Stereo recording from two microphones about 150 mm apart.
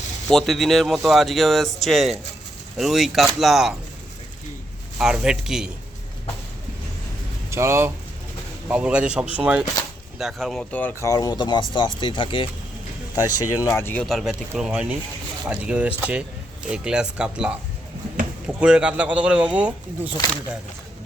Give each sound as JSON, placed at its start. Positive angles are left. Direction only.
{"t": 0.3, "sound": "speech", "side_deg": 0}
{"t": 4.9, "sound": "speech", "side_deg": -5}
{"t": 7.5, "sound": "speech", "side_deg": -15}
{"t": 13.7, "sound": "speech", "side_deg": 15}
{"t": 14.0, "sound": "speech", "side_deg": 0}